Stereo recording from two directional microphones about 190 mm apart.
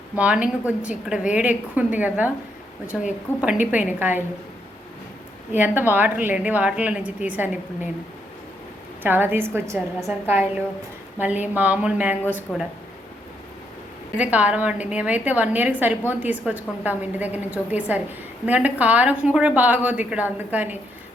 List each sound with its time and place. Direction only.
0.2 s a woman's voice: 5° right (ahead or behind)
5.5 s a woman's voice: 10° right (ahead or behind)
9.0 s a woman's voice: 10° right (ahead or behind)
14.2 s a woman's voice: 5° right (ahead or behind)